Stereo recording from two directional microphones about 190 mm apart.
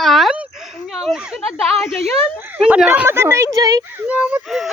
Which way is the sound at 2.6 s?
5° right (ahead or behind).